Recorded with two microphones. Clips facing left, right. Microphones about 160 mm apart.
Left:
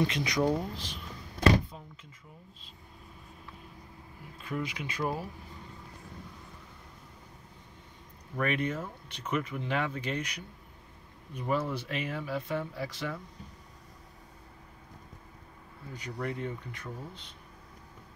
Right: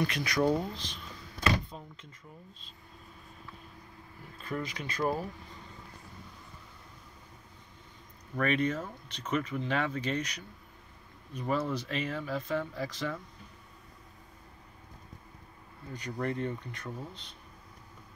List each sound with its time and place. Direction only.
0.0 s speech: 20° left (ahead or behind)
0.5 s speech: 5° left (ahead or behind)
4.4 s speech: 10° left (ahead or behind)
8.4 s speech: 10° left (ahead or behind)
15.9 s speech: 10° left (ahead or behind)